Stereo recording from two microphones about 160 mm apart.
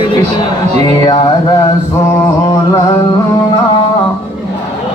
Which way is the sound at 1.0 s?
30° left (ahead or behind).